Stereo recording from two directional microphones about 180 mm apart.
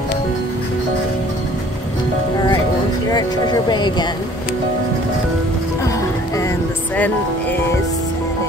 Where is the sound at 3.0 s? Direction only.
20° left (ahead or behind).